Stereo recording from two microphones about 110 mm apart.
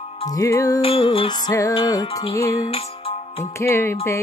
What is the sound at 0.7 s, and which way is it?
Music, 55° left (ahead or behind).